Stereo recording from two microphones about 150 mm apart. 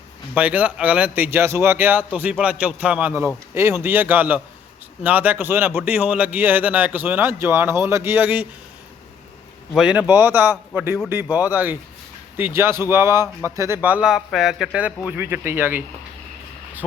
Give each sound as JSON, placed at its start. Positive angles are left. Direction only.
{"t": 0.3, "sound": "speech", "side_deg": -10}
{"t": 9.7, "sound": "speech", "side_deg": -5}